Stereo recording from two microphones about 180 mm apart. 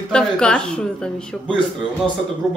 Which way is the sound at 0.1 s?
5° left (ahead or behind).